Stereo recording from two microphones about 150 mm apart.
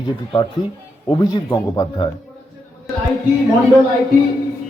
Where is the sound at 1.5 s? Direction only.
25° left (ahead or behind).